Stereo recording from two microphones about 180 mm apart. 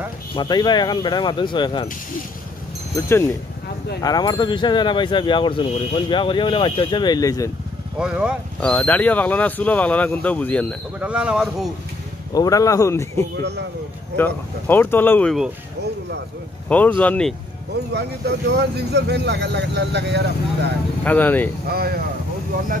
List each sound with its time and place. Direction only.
0.4 s speech: 25° left (ahead or behind)
4.0 s speech: 20° left (ahead or behind)
8.0 s speech: 5° right (ahead or behind)
8.5 s speech: 10° left (ahead or behind)
11.0 s speech: 5° right (ahead or behind)
12.4 s speech: 20° left (ahead or behind)
16.6 s speech: 10° left (ahead or behind)
17.9 s speech: 70° right (ahead or behind)
21.0 s speech: 10° left (ahead or behind)
21.6 s speech: 60° right (ahead or behind)